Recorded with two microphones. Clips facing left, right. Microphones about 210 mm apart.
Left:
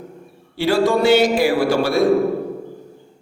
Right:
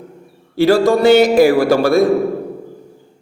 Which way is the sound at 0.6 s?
40° right (ahead or behind).